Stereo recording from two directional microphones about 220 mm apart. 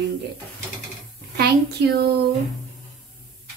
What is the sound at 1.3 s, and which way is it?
Speech, 45° right (ahead or behind).